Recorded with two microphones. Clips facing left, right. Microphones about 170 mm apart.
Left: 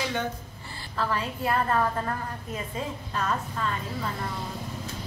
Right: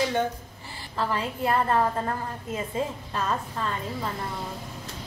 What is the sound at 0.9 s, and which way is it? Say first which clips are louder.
Speech: right 1 dB; 25° right (ahead or behind).